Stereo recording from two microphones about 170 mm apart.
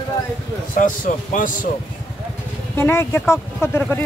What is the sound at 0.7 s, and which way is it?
Speech, 50° left (ahead or behind).